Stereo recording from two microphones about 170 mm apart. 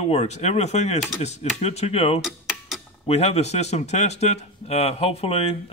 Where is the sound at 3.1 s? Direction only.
40° left (ahead or behind).